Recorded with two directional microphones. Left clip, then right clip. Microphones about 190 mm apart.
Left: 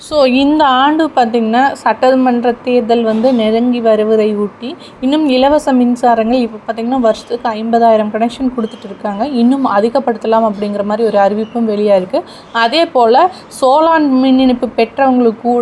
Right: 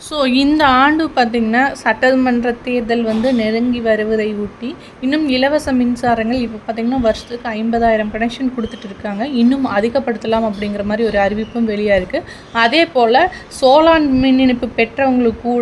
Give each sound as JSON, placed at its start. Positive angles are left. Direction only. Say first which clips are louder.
{"t": 0.1, "sound": "a woman's voice", "louder": "left 7 dB", "side_deg": 15}
{"t": 0.5, "sound": "a woman's voice", "louder": "left 2 dB", "side_deg": 0}